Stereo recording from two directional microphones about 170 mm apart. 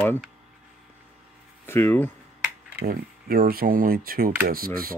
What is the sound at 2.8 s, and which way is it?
Speech, 60° right (ahead or behind).